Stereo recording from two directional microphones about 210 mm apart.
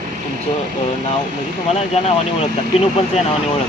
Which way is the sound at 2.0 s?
30° left (ahead or behind).